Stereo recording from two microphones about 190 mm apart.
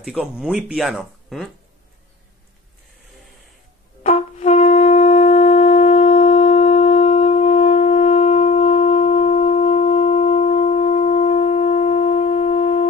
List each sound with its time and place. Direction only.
0.0 s speech: centre (ahead or behind)
4.0 s wind instrument: 35° left (ahead or behind)